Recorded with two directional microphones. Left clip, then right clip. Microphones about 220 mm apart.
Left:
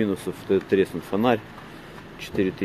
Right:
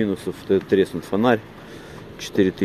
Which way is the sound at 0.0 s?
5° right (ahead or behind).